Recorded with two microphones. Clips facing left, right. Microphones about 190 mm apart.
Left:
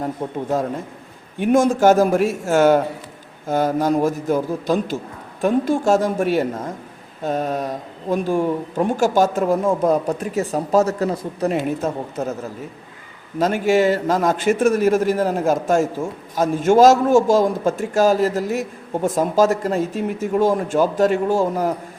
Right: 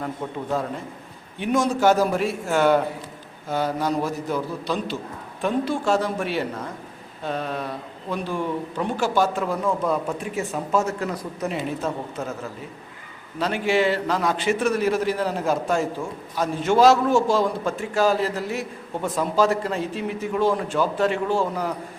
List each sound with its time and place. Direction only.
0.2 s speech: 30° left (ahead or behind)
1.4 s a man's voice: 50° left (ahead or behind)
11.1 s speech: 25° left (ahead or behind)
11.8 s speech: 40° left (ahead or behind)
13.4 s a man's voice: 45° left (ahead or behind)